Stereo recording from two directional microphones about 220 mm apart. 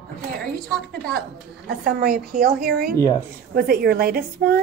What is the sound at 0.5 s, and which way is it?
Speech, centre (ahead or behind).